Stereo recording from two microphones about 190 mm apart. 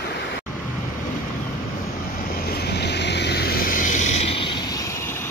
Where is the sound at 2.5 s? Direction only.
60° left (ahead or behind); by 5.2 s 15° left (ahead or behind).